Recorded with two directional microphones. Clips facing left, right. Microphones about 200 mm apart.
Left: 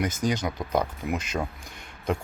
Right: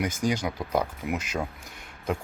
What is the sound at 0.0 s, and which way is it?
Speech, 10° right (ahead or behind).